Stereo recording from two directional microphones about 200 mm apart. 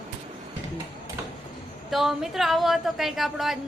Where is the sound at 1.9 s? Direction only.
Centre (ahead or behind).